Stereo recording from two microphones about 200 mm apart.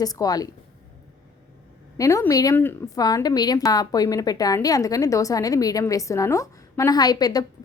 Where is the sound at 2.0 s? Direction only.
15° left (ahead or behind).